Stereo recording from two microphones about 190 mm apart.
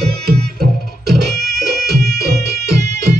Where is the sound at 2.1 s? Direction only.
55° right (ahead or behind).